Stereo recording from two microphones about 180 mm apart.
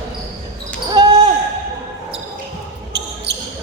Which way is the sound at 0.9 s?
25° right (ahead or behind).